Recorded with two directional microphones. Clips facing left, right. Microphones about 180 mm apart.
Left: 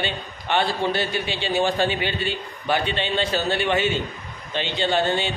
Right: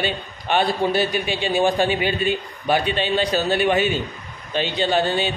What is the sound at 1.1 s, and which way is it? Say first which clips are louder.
Speech: right 3 dB; 15° right (ahead or behind).